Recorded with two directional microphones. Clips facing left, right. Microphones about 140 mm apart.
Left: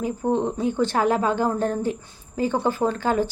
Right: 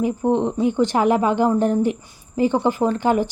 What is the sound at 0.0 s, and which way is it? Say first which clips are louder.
A woman's voice: right 4 dB; 20° right (ahead or behind).